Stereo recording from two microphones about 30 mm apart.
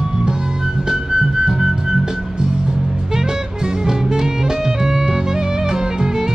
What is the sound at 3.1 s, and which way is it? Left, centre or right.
Music, right.